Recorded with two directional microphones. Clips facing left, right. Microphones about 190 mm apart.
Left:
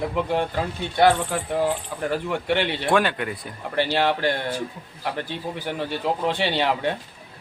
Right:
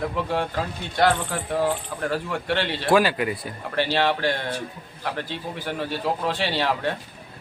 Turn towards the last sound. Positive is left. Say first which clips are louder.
# left 2 dB
turn(degrees=15)  # may be behind; listen again after turning